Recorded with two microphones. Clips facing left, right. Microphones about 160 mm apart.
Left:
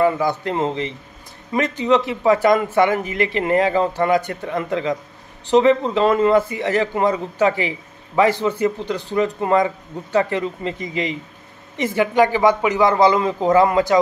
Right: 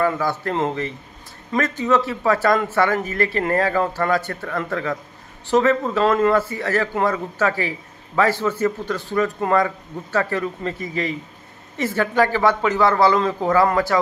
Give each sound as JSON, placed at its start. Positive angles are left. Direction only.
{"t": 0.0, "sound": "speech", "side_deg": 15}